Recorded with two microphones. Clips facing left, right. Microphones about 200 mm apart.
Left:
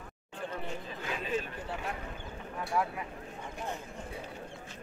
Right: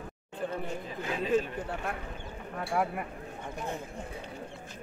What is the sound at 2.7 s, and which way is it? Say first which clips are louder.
Speech: right 2 dB; 55° right (ahead or behind).